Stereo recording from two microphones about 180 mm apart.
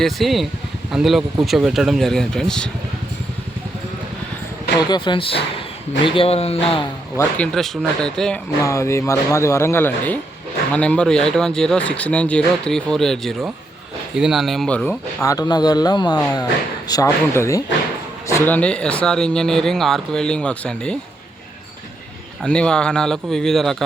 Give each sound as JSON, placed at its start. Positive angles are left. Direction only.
{"t": 0.0, "sound": "speech", "side_deg": 0}
{"t": 4.9, "sound": "speech", "side_deg": 25}
{"t": 7.2, "sound": "speech", "side_deg": 5}
{"t": 8.6, "sound": "speech", "side_deg": 15}
{"t": 15.2, "sound": "speech", "side_deg": 20}
{"t": 22.4, "sound": "speech", "side_deg": 5}